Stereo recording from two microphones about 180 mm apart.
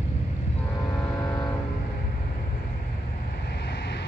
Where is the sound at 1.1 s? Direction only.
10° left (ahead or behind).